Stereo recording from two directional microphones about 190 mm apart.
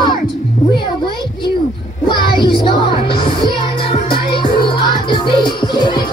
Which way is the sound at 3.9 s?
25° left (ahead or behind).